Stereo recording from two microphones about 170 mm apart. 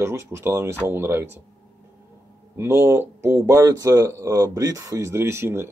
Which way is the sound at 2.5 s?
15° right (ahead or behind).